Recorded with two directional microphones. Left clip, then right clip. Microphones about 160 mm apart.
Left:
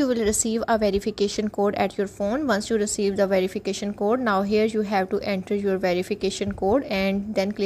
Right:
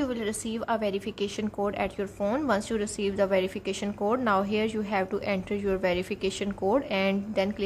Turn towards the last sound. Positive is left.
turn(degrees=35)  # may be behind; listen again after turning